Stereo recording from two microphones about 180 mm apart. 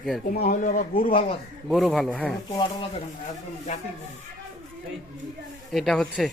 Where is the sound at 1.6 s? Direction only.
Centre (ahead or behind).